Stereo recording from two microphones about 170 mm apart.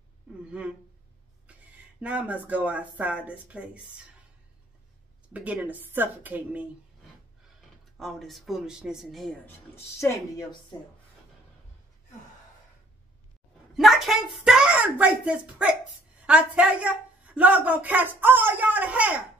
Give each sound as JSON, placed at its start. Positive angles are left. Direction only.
{"t": 0.5, "sound": "speech", "side_deg": -5}
{"t": 2.0, "sound": "speech", "side_deg": -10}
{"t": 5.3, "sound": "speech", "side_deg": -10}
{"t": 8.0, "sound": "a child's voice", "side_deg": 0}
{"t": 9.8, "sound": "a woman's voice", "side_deg": 15}
{"t": 13.7, "sound": "a child's voice", "side_deg": 0}